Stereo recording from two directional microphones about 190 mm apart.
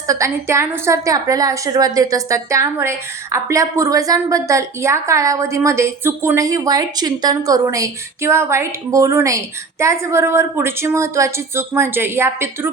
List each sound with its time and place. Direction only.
0.1 s a woman's voice: 15° right (ahead or behind)